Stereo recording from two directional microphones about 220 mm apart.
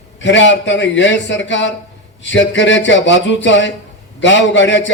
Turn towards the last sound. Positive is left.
turn(degrees=55)  # may be behind; listen again after turning